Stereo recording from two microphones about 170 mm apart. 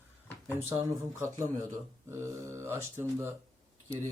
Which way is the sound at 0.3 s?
15° left (ahead or behind).